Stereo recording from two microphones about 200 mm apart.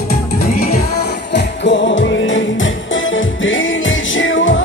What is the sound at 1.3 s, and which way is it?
Music, 65° left (ahead or behind).